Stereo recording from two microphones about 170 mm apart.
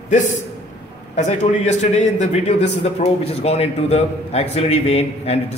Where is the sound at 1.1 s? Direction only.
45° left (ahead or behind).